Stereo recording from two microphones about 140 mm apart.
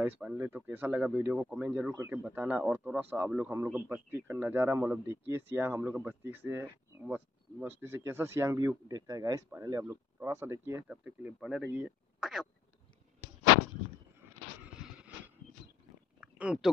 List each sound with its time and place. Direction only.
0.0 s speech: 10° right (ahead or behind)
1.9 s speech: 20° right (ahead or behind)
2.2 s speech: 10° right (ahead or behind)
14.8 s vehicle: 5° right (ahead or behind)
16.2 s a sound: 10° right (ahead or behind)